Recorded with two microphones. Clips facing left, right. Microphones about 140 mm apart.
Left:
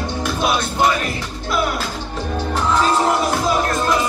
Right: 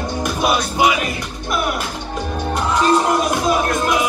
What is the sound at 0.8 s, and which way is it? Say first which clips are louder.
Speech: right 1 dB; 15° right (ahead or behind).